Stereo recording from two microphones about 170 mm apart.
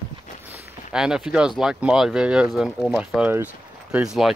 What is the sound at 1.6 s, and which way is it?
Speech, 5° right (ahead or behind).